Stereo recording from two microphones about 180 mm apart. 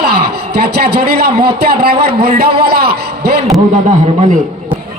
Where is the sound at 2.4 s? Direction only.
60° right (ahead or behind).